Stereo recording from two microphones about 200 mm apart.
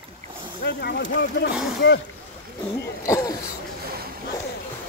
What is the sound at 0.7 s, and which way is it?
Speech, 55° left (ahead or behind).